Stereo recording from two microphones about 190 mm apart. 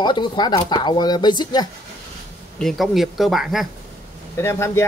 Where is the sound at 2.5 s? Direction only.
Centre (ahead or behind).